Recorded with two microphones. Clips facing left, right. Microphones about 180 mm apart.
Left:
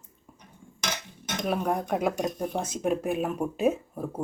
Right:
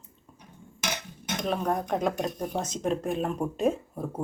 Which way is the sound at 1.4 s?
10° left (ahead or behind).